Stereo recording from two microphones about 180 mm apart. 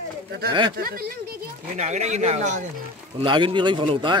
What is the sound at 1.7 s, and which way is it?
Speech, 40° right (ahead or behind).